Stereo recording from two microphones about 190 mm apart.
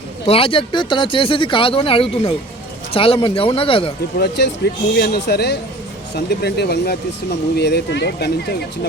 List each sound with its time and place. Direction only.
0.3 s speech: 30° left (ahead or behind)
4.2 s speech: 65° left (ahead or behind)